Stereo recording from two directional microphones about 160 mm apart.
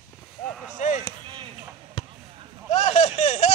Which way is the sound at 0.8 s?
45° left (ahead or behind).